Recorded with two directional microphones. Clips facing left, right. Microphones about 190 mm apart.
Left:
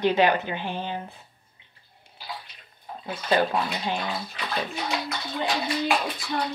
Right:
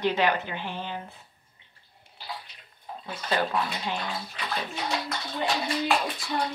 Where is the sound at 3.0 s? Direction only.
25° left (ahead or behind).